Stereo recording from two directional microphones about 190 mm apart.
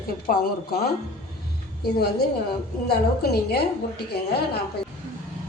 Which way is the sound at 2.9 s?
55° left (ahead or behind).